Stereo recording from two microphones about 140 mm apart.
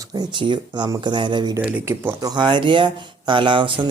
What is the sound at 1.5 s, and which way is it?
Speech, 15° right (ahead or behind).